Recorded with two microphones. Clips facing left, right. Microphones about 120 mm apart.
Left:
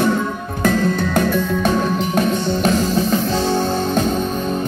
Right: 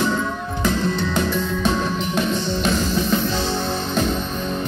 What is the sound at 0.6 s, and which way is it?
Music, 50° left (ahead or behind).